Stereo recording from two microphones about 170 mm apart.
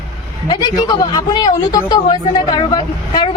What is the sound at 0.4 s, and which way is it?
Speech, 25° left (ahead or behind).